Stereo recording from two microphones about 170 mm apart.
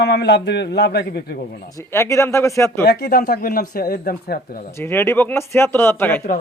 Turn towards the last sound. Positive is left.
turn(degrees=10)  # may be behind; listen again after turning